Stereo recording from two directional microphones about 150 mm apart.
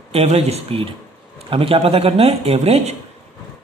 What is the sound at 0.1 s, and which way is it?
A man's voice, 45° right (ahead or behind).